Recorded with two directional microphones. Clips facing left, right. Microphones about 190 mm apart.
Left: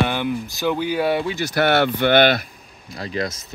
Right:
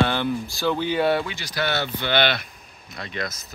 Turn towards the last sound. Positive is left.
turn(degrees=30)  # may be behind; listen again after turning